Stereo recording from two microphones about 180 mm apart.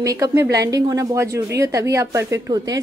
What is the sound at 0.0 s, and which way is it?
A woman's voice, 20° right (ahead or behind).